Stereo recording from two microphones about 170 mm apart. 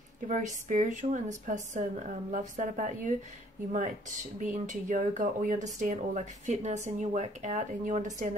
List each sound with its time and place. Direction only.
0.3 s speech: 45° right (ahead or behind)
4.4 s speech: 45° right (ahead or behind)